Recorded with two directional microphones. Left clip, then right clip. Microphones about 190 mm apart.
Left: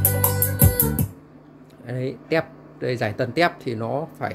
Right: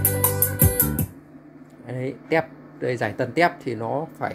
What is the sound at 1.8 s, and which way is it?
Speech, 15° left (ahead or behind).